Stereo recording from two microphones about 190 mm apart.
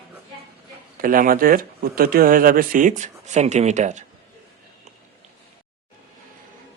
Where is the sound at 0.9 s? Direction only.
45° right (ahead or behind).